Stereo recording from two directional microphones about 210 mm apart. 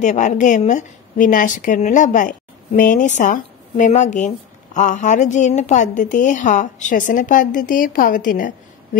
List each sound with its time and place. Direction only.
0.0 s a woman's voice: 35° left (ahead or behind)